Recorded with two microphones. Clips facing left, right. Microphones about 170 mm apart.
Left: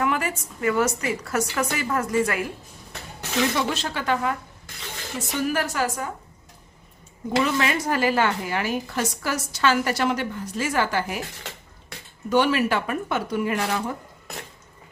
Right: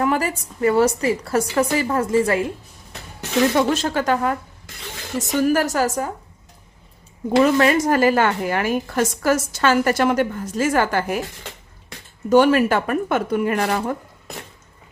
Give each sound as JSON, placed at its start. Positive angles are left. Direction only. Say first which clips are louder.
{"t": 0.0, "sound": "a woman's voice", "louder": "right 4 dB", "side_deg": -35}
{"t": 3.5, "sound": "a woman's voice", "louder": "right 7 dB", "side_deg": -50}
{"t": 7.3, "sound": "a woman's voice", "louder": "right 8 dB", "side_deg": -45}
{"t": 12.3, "sound": "a woman's voice", "louder": "right 6 dB", "side_deg": -45}